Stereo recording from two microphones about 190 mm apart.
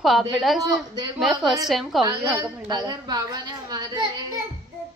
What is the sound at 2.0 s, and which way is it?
A woman's voice, 15° right (ahead or behind).